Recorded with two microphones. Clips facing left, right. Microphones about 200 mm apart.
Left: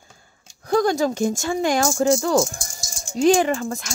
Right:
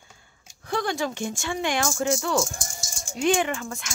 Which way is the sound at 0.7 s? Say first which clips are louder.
Left 8 dB; 40° left (ahead or behind).